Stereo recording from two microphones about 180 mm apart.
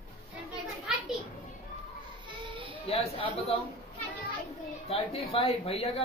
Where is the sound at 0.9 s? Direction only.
5° right (ahead or behind).